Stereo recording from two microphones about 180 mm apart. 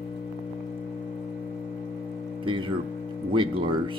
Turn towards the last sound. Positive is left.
turn(degrees=-30)  # may be behind; listen again after turning